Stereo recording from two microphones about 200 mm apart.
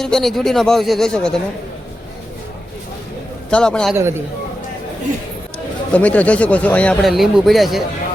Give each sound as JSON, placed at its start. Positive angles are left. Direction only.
{"t": 0.0, "sound": "speech", "side_deg": 0}
{"t": 3.5, "sound": "speech", "side_deg": 5}
{"t": 5.9, "sound": "speech", "side_deg": 5}